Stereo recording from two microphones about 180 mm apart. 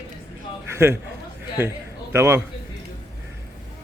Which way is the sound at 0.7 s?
15° right (ahead or behind).